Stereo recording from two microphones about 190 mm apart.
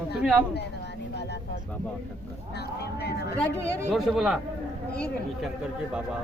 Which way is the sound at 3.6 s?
15° right (ahead or behind).